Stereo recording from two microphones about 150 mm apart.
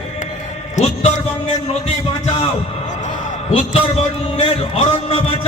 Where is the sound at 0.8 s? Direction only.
50° left (ahead or behind).